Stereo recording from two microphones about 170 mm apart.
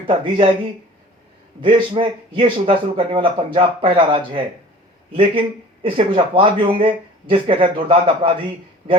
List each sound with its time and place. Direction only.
0.1 s speech: 30° right (ahead or behind)